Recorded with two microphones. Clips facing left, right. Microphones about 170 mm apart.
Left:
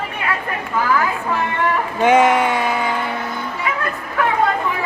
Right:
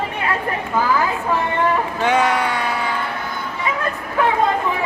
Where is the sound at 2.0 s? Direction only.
20° left (ahead or behind).